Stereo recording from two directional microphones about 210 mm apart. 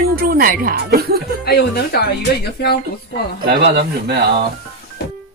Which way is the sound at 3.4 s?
50° right (ahead or behind).